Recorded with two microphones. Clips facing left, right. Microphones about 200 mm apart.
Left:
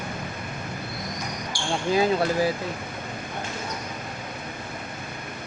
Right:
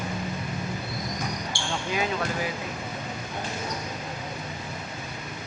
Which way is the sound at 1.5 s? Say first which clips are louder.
Left 2 dB; 25° right (ahead or behind).